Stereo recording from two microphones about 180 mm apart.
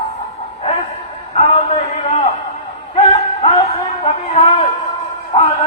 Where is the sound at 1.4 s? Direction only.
35° left (ahead or behind).